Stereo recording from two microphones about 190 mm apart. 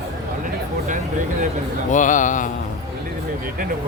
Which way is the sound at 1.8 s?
40° left (ahead or behind).